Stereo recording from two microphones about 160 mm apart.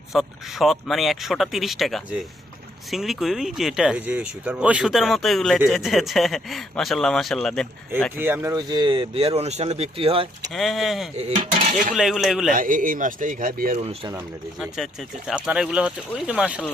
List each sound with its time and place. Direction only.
0.1 s speech: centre (ahead or behind)
8.1 s speech: 15° right (ahead or behind); by 10.2 s 35° right (ahead or behind)
10.5 s speech: centre (ahead or behind)
11.5 s dishes: 40° right (ahead or behind)
11.9 s speech: centre (ahead or behind)
12.5 s speech: 60° right (ahead or behind)
13.7 s speech: 40° right (ahead or behind)
15.3 s speech: 5° right (ahead or behind)